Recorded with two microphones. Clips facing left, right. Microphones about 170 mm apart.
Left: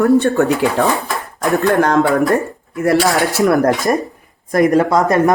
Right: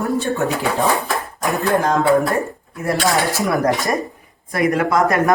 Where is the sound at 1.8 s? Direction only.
80° left.